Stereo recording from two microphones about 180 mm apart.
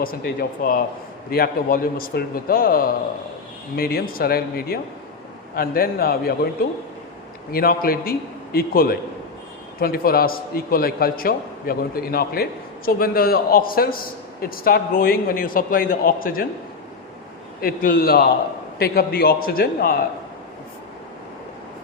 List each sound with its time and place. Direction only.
0.0 s a man's voice: 55° left (ahead or behind)
7.5 s a man's voice: 55° left (ahead or behind)
17.6 s a man's voice: 55° left (ahead or behind)